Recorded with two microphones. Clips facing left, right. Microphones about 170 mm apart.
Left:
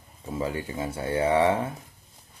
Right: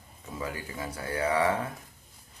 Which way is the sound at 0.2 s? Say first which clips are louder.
Left 6 dB; 25° left (ahead or behind).